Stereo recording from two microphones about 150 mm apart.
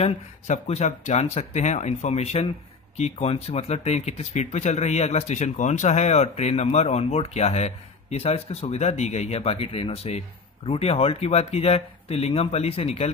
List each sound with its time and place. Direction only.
0.0 s speech: 50° left (ahead or behind)